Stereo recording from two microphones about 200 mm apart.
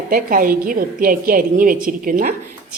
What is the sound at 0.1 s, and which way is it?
A woman's voice, 45° right (ahead or behind).